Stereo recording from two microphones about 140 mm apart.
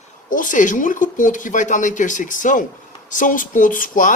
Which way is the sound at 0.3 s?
70° left (ahead or behind).